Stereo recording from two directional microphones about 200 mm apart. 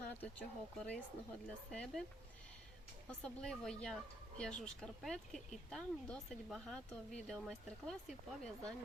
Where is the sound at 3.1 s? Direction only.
5° left (ahead or behind).